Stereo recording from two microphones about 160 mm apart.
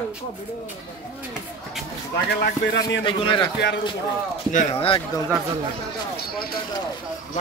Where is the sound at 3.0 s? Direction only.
30° left (ahead or behind).